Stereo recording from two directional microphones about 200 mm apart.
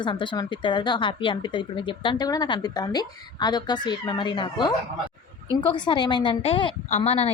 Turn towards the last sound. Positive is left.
turn(degrees=30)  # may be behind; listen again after turning